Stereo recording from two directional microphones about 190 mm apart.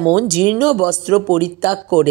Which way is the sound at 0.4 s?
5° right (ahead or behind).